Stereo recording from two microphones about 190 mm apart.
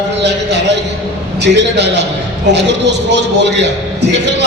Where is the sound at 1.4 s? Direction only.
65° right (ahead or behind).